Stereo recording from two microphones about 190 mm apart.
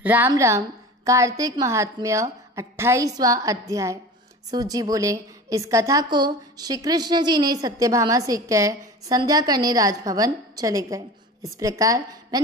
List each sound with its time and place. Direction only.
0.0 s a woman's voice: 10° right (ahead or behind)